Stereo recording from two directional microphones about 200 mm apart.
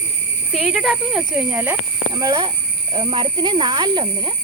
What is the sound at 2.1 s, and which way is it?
Speech, 20° right (ahead or behind).